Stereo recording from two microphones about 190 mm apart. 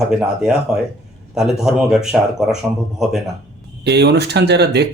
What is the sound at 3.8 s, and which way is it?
Speech, 60° right (ahead or behind).